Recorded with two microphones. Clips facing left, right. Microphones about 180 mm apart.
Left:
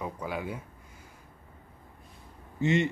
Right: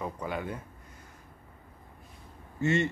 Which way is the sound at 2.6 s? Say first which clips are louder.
Left 1 dB; 15° left (ahead or behind).